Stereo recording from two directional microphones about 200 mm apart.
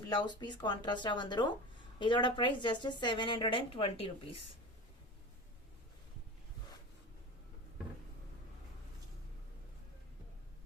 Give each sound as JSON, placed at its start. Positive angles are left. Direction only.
{"t": 0.1, "sound": "a woman's voice", "side_deg": 20}